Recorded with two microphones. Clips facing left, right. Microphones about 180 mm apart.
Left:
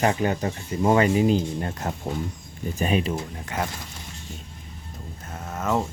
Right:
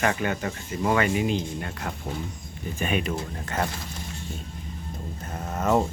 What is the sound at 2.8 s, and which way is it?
Speech, 30° left (ahead or behind).